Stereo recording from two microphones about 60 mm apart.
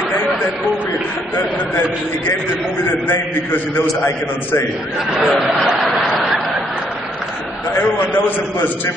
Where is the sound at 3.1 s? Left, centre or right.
Left.